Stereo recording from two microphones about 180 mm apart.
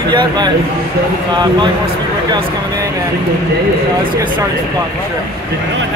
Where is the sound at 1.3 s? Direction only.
25° right (ahead or behind).